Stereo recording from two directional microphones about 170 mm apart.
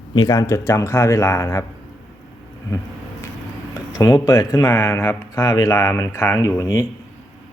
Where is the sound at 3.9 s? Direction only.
20° left (ahead or behind).